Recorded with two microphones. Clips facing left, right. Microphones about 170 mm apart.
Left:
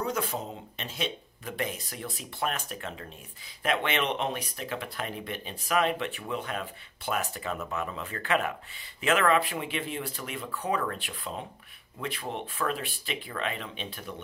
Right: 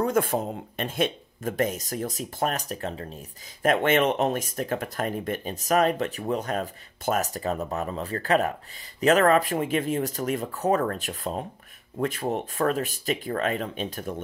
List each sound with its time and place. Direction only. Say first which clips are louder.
0.0 s speech: right 7 dB; 50° right (ahead or behind)